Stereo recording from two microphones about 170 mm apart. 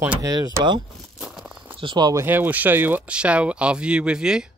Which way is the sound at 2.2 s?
10° right (ahead or behind).